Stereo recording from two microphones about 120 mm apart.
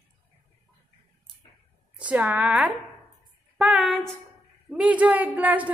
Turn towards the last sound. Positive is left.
turn(degrees=-10)  # may be behind; listen again after turning